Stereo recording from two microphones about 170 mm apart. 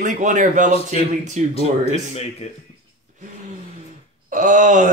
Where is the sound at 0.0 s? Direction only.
50° right (ahead or behind).